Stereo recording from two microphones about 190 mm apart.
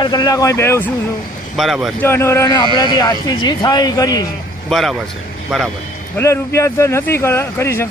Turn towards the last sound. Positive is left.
turn(degrees=15)  # may be behind; listen again after turning